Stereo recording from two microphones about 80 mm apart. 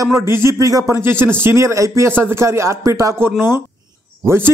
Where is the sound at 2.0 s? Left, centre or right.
Right.